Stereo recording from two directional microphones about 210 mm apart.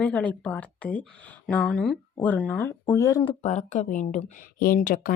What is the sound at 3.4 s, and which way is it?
Speech, 35° left (ahead or behind).